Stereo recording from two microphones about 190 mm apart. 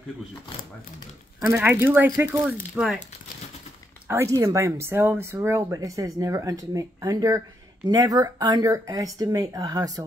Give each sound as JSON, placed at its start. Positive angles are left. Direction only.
{"t": 1.5, "sound": "speech", "side_deg": -10}
{"t": 2.7, "sound": "speech", "side_deg": 0}
{"t": 4.1, "sound": "speech", "side_deg": -15}